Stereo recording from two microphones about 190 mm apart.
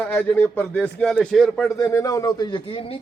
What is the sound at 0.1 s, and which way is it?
Speech, 10° left (ahead or behind).